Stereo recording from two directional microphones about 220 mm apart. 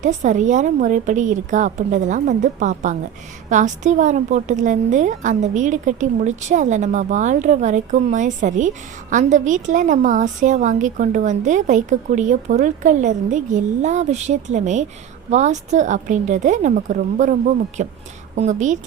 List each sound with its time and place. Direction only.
0.0 s a woman's voice: 35° right (ahead or behind)